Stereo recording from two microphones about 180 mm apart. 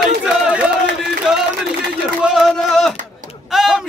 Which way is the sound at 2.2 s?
Centre (ahead or behind).